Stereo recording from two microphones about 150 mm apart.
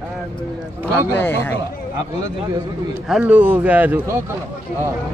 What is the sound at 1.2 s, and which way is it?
Speech, 15° left (ahead or behind).